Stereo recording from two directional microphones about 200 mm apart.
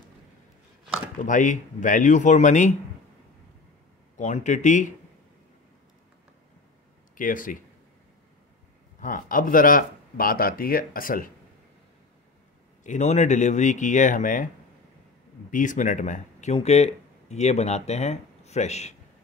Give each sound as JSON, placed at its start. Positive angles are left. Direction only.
{"t": 1.2, "sound": "speech", "side_deg": 40}
{"t": 4.2, "sound": "speech", "side_deg": 35}
{"t": 7.2, "sound": "speech", "side_deg": 40}
{"t": 9.0, "sound": "speech", "side_deg": 45}
{"t": 12.8, "sound": "speech", "side_deg": 35}
{"t": 15.5, "sound": "speech", "side_deg": 40}